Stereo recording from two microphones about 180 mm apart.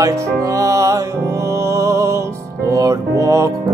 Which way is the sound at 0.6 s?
15° right (ahead or behind).